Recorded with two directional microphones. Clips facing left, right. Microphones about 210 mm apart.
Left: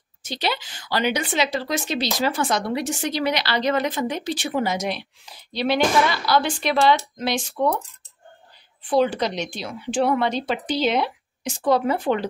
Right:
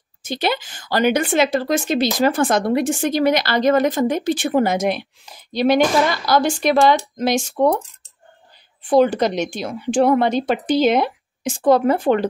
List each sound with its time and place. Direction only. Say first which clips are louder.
0.2 s speech: right 5 dB; 50° right (ahead or behind)
8.8 s speech: right 5 dB; 45° right (ahead or behind)